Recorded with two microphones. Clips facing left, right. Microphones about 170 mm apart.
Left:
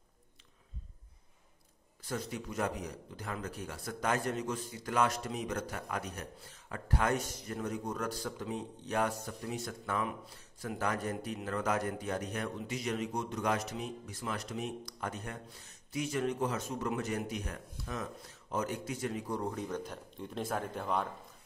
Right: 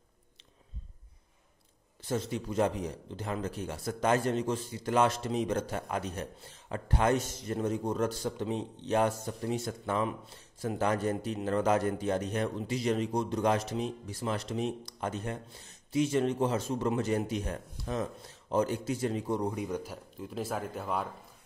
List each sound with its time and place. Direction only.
2.0 s a man's voice: 25° right (ahead or behind); by 21.1 s 5° right (ahead or behind)